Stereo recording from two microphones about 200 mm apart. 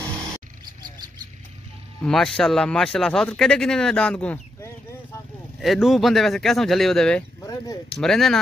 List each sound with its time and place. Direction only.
2.0 s speech: centre (ahead or behind)
7.4 s a sound: 20° left (ahead or behind)
8.0 s speech: centre (ahead or behind)